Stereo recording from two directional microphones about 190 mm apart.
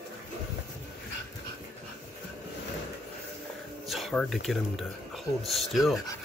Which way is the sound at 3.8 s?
Centre (ahead or behind).